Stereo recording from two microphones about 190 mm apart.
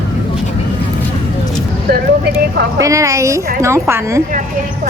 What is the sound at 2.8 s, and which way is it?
A woman's voice, 15° right (ahead or behind).